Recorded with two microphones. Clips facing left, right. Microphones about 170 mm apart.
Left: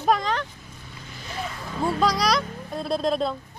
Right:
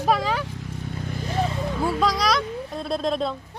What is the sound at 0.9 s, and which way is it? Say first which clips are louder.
Vehicle: right 11 dB; 50° right (ahead or behind).